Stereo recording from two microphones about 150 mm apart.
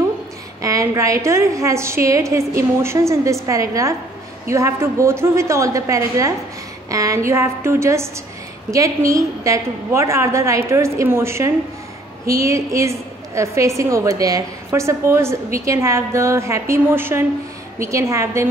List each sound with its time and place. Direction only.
0.6 s a woman's voice: 20° right (ahead or behind)